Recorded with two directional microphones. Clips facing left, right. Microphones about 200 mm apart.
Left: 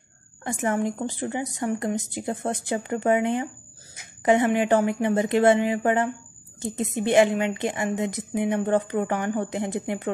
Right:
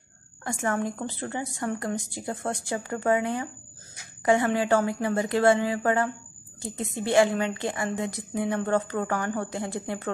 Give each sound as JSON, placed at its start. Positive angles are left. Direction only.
{"t": 0.4, "sound": "a woman's voice", "side_deg": 20}